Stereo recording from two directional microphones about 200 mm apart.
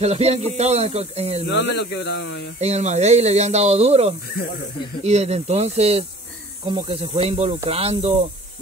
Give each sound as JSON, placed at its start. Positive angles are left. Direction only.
{"t": 0.0, "sound": "speech", "side_deg": -30}
{"t": 1.5, "sound": "speech", "side_deg": 55}
{"t": 2.6, "sound": "speech", "side_deg": -35}